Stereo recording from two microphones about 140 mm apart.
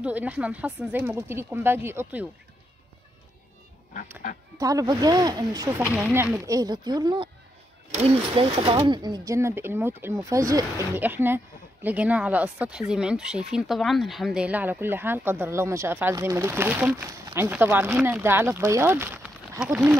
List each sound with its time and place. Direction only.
0.0 s speech: 10° right (ahead or behind)
4.6 s speech: 25° right (ahead or behind)
5.9 s speech: 10° right (ahead or behind)
6.4 s speech: 25° right (ahead or behind)
8.0 s speech: 45° right (ahead or behind); by 19.6 s 15° right (ahead or behind)